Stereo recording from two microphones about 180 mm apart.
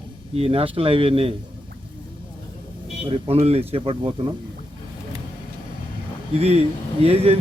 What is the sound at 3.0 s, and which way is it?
Speech, 30° right (ahead or behind).